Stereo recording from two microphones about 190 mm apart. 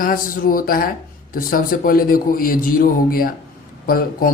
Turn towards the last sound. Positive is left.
turn(degrees=50)  # may be behind; listen again after turning